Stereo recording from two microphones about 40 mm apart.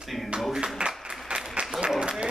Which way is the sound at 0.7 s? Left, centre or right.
Right.